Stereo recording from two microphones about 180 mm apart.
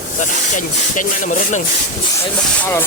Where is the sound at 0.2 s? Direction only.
45° left (ahead or behind).